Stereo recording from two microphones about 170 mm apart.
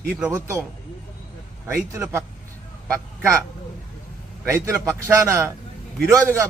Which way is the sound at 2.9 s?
15° right (ahead or behind).